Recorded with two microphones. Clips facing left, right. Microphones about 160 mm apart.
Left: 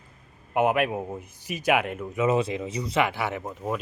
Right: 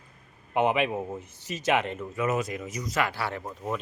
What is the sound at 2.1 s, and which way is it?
Speech, 25° left (ahead or behind).